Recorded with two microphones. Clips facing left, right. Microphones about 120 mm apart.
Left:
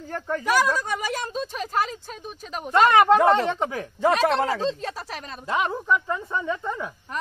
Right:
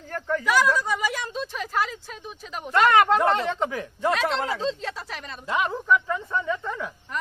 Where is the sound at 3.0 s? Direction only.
10° left (ahead or behind).